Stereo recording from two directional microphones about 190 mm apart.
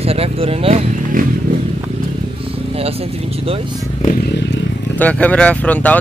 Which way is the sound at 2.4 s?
30° right (ahead or behind).